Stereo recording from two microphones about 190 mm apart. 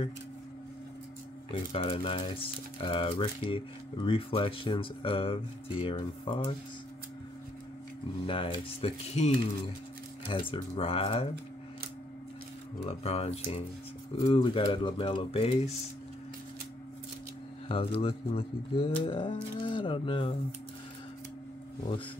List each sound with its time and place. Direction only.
1.5 s speech: 30° left (ahead or behind)
8.3 s speech: 30° left (ahead or behind)
12.8 s speech: 35° left (ahead or behind)
17.6 s speech: 30° left (ahead or behind)